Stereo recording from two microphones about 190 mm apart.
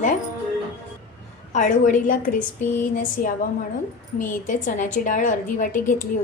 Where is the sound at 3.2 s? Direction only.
45° left (ahead or behind).